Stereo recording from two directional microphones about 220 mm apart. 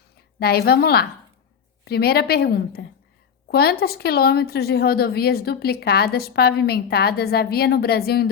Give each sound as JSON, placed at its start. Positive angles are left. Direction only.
{"t": 0.3, "sound": "a woman's voice", "side_deg": 45}